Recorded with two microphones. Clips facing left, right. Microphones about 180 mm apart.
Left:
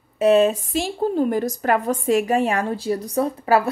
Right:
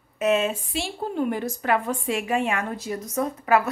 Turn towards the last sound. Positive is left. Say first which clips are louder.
# left 3 dB
turn(degrees=30)  # may be behind; listen again after turning